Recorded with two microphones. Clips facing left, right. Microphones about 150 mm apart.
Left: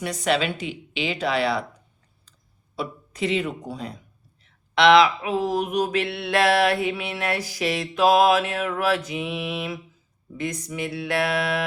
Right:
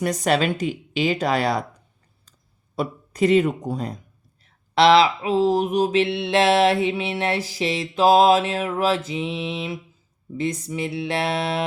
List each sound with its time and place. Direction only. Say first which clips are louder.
0.0 s speech: right 3 dB; 45° right (ahead or behind)
2.7 s speech: right 5 dB; 45° right (ahead or behind)
4.4 s mantra: right 1 dB; 35° right (ahead or behind)